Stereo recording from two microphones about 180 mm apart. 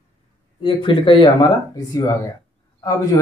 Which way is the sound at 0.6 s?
30° left (ahead or behind).